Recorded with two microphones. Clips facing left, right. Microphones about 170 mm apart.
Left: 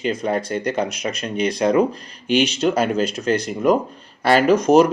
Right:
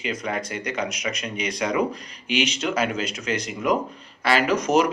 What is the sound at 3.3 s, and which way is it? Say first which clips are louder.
Speech: left 6 dB; 35° left (ahead or behind).